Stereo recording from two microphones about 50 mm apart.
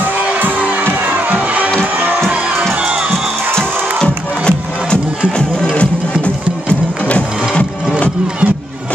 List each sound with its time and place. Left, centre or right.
0.0 s music: right
2.0 s crowd: right
3.1 s music: centre
5.8 s music: left